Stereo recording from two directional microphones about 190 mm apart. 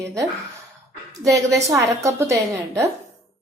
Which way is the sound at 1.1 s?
15° right (ahead or behind).